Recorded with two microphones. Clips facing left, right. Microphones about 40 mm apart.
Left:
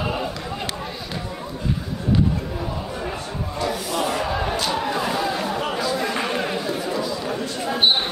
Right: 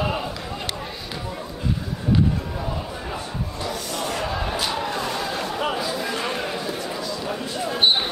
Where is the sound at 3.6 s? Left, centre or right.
Centre.